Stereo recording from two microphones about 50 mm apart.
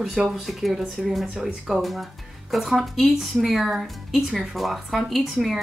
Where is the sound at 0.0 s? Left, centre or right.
Centre.